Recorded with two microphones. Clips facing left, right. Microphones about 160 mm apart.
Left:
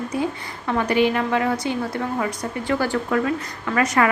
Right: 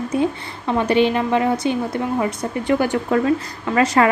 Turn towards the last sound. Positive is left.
turn(degrees=-30)  # may be behind; listen again after turning